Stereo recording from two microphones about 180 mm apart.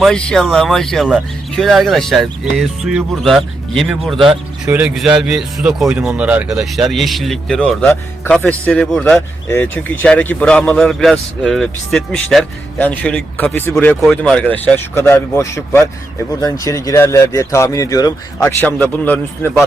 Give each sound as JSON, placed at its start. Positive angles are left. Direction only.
{"t": 0.0, "sound": "speech", "side_deg": 5}